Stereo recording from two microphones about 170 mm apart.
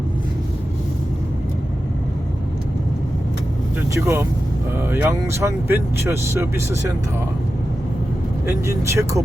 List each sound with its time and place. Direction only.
3.9 s speech: 15° right (ahead or behind)
8.4 s speech: 15° right (ahead or behind)